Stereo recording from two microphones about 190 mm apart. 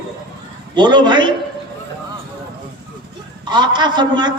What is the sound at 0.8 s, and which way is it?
Speech, 25° right (ahead or behind).